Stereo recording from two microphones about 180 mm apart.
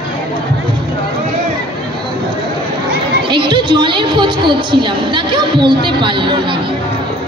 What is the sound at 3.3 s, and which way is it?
A woman's voice, 25° right (ahead or behind).